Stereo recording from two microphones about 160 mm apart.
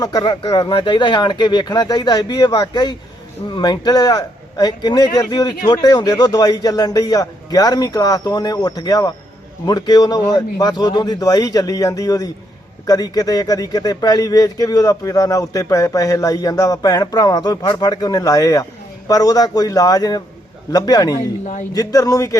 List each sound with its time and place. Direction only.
0.0 s speech: 25° left (ahead or behind)